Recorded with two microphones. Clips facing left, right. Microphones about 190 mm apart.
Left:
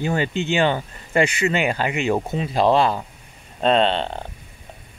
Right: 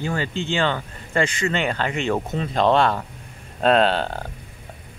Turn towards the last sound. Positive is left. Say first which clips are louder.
# even
turn(degrees=0)  # may be behind; listen again after turning